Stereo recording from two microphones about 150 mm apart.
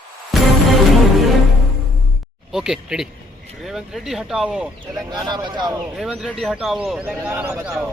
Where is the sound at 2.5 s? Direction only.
5° right (ahead or behind).